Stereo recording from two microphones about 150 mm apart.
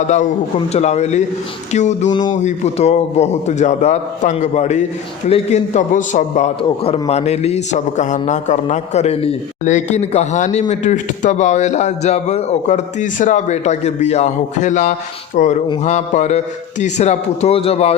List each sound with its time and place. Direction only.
0.7 s a man's voice: 50° left (ahead or behind)
6.6 s a man's voice: 40° left (ahead or behind)
15.4 s a sound: 60° left (ahead or behind)
15.8 s a man's voice: 55° left (ahead or behind)